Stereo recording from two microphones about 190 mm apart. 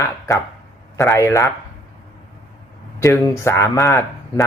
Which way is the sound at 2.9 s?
15° left (ahead or behind).